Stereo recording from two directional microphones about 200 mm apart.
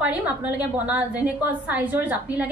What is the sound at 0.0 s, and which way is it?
A woman's voice, 5° right (ahead or behind).